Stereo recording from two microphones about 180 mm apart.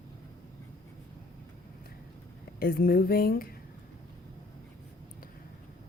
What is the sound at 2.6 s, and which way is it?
Speech, 55° left (ahead or behind).